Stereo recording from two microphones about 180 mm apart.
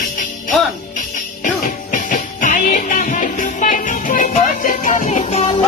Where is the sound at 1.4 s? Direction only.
45° left (ahead or behind).